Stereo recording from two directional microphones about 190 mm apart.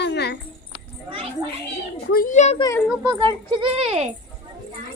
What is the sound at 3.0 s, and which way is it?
Speech, 25° right (ahead or behind).